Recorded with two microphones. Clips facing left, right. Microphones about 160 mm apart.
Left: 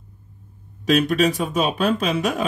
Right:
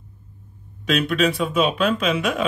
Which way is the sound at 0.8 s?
40° left (ahead or behind).